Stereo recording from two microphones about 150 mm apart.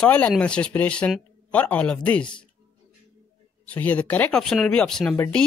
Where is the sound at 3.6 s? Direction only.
10° left (ahead or behind).